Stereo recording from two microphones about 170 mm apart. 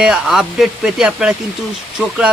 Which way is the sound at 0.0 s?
5° right (ahead or behind).